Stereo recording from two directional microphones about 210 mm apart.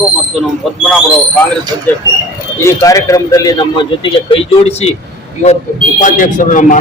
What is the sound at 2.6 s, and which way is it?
Speech, 15° left (ahead or behind).